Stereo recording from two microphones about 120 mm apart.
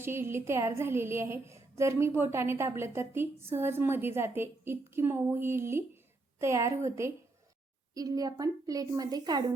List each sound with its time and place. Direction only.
0.0 s a woman's voice: 20° right (ahead or behind)